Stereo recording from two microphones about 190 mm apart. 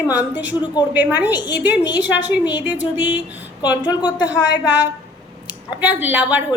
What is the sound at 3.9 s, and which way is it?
Speech, 25° left (ahead or behind).